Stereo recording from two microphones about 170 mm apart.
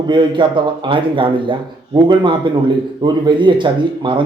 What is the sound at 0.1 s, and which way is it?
Speech, 30° right (ahead or behind).